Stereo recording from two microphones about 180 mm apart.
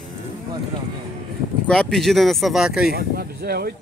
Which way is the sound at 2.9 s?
60° right (ahead or behind).